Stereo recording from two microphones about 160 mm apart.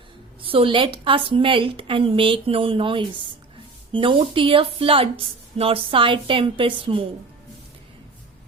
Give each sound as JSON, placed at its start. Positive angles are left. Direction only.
{"t": 0.4, "sound": "speech", "side_deg": -35}